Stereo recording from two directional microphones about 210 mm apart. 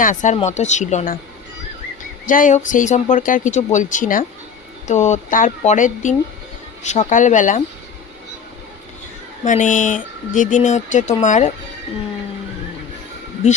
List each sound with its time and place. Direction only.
0.0 s speech: 35° left (ahead or behind)
2.2 s speech: 40° left (ahead or behind)
9.4 s speech: 35° left (ahead or behind)